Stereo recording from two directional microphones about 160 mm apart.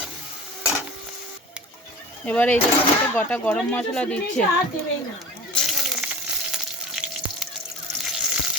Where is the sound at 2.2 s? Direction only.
10° left (ahead or behind).